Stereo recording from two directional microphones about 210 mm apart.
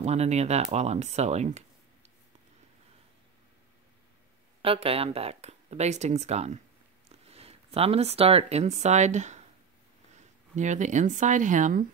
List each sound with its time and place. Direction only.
0.0 s speech: 30° right (ahead or behind)
4.6 s speech: 25° right (ahead or behind)